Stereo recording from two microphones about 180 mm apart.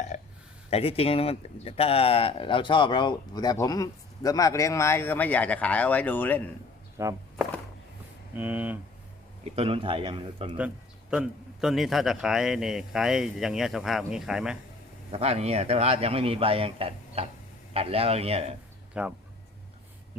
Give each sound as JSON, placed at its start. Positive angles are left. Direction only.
{"t": 0.7, "sound": "speech", "side_deg": 35}
{"t": 7.0, "sound": "speech", "side_deg": -15}
{"t": 8.4, "sound": "speech", "side_deg": -10}
{"t": 9.6, "sound": "speech", "side_deg": -30}
{"t": 11.1, "sound": "a man's voice", "side_deg": -5}
{"t": 15.1, "sound": "a man's voice", "side_deg": -35}
{"t": 19.0, "sound": "a man's voice", "side_deg": -5}